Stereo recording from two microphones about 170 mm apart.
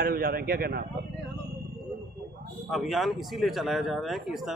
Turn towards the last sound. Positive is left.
turn(degrees=0)  # may be behind; listen again after turning